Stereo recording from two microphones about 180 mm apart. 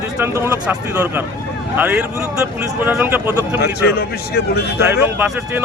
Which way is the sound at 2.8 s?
10° right (ahead or behind).